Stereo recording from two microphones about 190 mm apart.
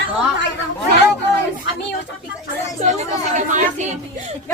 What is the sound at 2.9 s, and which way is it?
Speech, 40° right (ahead or behind).